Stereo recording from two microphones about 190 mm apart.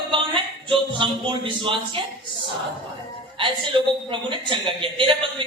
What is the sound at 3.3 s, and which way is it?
A woman's voice, 25° right (ahead or behind).